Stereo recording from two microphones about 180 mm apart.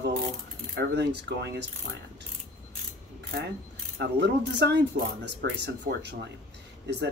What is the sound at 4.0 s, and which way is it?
Speech, 75° right (ahead or behind).